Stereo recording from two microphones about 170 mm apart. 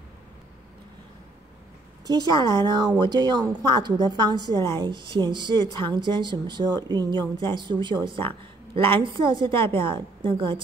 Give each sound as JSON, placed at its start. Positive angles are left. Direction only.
{"t": 2.0, "sound": "a woman's voice", "side_deg": -25}